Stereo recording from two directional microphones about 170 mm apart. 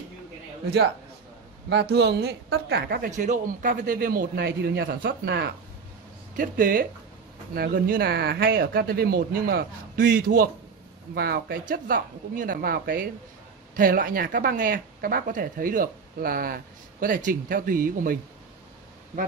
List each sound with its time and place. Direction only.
0.7 s a woman's voice: 70° right (ahead or behind)
1.7 s a woman's voice: 85° right; by 3.1 s 65° right (ahead or behind)
3.1 s speech: 50° right (ahead or behind); by 5.5 s 75° right (ahead or behind)
6.3 s speech: 55° right (ahead or behind)